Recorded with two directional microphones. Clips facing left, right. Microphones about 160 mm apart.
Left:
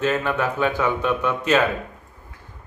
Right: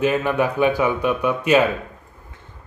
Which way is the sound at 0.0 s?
10° right (ahead or behind).